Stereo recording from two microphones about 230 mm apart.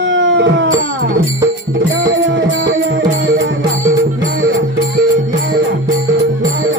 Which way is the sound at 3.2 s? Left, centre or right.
Right.